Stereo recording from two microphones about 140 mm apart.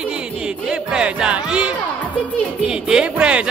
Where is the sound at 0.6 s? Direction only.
5° right (ahead or behind).